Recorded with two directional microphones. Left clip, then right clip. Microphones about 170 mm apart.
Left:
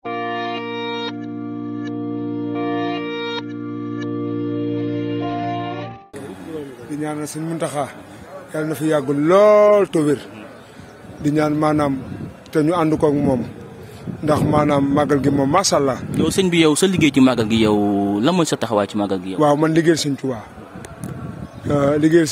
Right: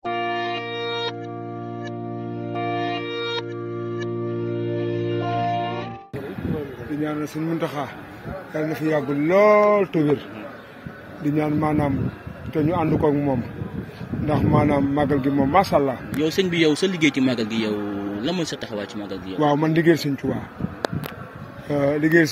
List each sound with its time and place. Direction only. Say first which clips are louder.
0.0 s music: left 1 dB; centre (ahead or behind)
2.5 s music: left 1 dB; centre (ahead or behind)
4.9 s music: left 1 dB; centre (ahead or behind)
7.0 s a man's voice: left 1 dB; 60° left (ahead or behind)
11.2 s a man's voice: left 5 dB; 40° left (ahead or behind)
21.6 s a man's voice: left 4 dB; 35° left (ahead or behind)